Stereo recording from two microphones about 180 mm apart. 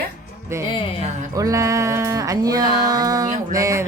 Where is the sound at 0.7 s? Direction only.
30° left (ahead or behind).